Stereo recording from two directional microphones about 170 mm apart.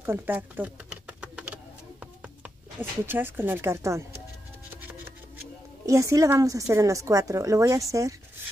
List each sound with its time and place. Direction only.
0.0 s typing: 10° right (ahead or behind)
2.4 s speech: 10° right (ahead or behind)
5.9 s a woman's voice: 20° right (ahead or behind)